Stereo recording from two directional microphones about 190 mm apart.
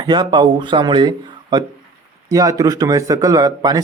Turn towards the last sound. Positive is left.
turn(degrees=-20)  # may be behind; listen again after turning